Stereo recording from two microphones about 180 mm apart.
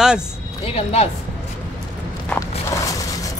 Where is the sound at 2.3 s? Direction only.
15° left (ahead or behind).